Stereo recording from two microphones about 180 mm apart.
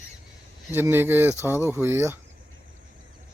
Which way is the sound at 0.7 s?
10° right (ahead or behind).